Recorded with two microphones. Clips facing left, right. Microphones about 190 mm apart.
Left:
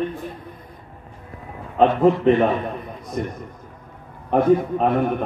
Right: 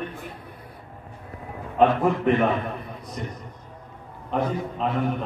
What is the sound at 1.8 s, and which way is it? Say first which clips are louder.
Speech: left 4 dB; 30° left (ahead or behind).